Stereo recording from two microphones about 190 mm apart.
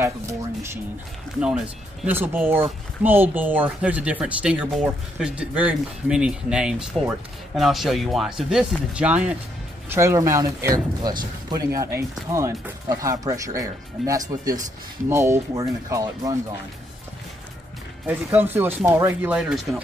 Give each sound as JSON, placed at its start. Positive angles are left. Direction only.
{"t": 0.0, "sound": "speech", "side_deg": -15}
{"t": 2.0, "sound": "speech", "side_deg": -10}
{"t": 18.0, "sound": "speech", "side_deg": -10}
{"t": 19.3, "sound": "speech", "side_deg": -5}